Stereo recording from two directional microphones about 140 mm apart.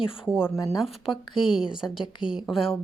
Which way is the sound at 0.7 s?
5° right (ahead or behind).